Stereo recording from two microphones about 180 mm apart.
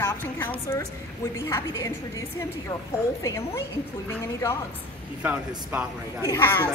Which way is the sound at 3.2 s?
15° left (ahead or behind).